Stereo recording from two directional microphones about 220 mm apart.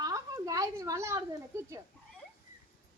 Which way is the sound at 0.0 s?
15° right (ahead or behind).